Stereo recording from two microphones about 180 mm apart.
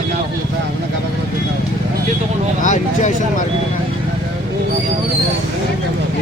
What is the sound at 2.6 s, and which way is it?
Speech, 45° left (ahead or behind).